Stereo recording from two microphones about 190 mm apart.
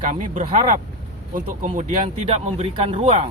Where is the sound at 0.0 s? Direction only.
40° right (ahead or behind).